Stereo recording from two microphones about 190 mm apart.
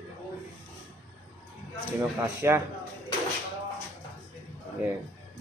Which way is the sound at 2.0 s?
15° right (ahead or behind).